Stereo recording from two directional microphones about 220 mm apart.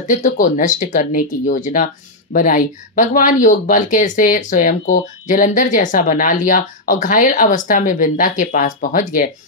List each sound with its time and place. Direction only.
0.0 s speech: 35° left (ahead or behind)